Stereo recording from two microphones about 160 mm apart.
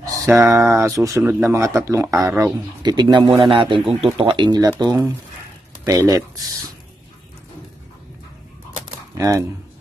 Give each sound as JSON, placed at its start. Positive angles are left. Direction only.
{"t": 0.0, "sound": "speech", "side_deg": -20}
{"t": 2.8, "sound": "a man's voice", "side_deg": -30}
{"t": 9.1, "sound": "speech", "side_deg": -20}